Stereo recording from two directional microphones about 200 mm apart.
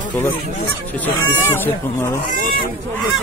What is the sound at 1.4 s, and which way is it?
Speech, 10° left (ahead or behind).